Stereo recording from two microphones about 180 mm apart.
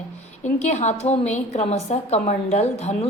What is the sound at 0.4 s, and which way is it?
A woman's voice, 40° left (ahead or behind).